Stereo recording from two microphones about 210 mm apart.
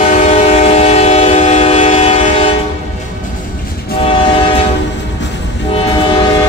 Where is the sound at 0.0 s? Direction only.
35° left (ahead or behind).